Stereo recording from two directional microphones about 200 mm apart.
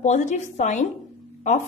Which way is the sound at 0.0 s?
35° left (ahead or behind).